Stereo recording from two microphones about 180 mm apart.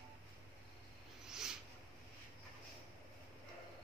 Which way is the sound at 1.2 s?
5° right (ahead or behind).